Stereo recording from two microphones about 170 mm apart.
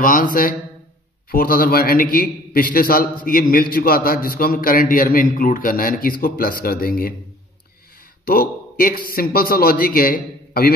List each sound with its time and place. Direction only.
0.0 s a man's voice: 50° left (ahead or behind)
8.3 s a man's voice: 60° left (ahead or behind)